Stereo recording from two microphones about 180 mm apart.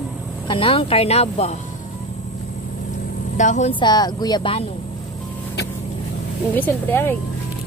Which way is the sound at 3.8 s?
20° left (ahead or behind).